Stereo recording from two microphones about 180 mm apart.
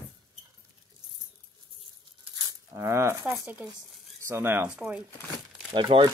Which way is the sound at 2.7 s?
15° right (ahead or behind).